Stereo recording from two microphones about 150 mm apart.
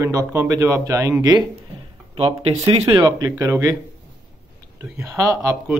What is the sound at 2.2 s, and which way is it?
Speech, 40° right (ahead or behind).